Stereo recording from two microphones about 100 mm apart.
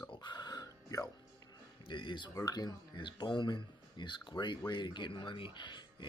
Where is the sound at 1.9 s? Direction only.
55° left (ahead or behind).